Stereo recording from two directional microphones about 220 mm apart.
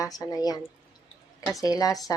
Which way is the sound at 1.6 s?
15° left (ahead or behind).